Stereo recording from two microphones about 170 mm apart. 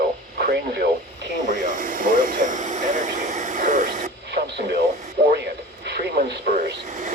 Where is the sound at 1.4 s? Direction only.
50° right (ahead or behind).